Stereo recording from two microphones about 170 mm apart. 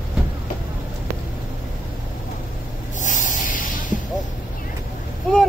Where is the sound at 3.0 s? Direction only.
50° left (ahead or behind).